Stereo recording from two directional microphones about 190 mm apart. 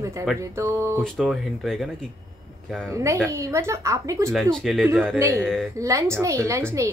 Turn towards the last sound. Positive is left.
turn(degrees=-15)  # may be behind; listen again after turning